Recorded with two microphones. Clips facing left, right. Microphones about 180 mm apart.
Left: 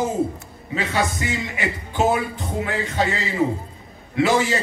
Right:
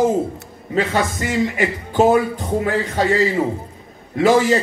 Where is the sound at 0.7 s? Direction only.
45° right (ahead or behind).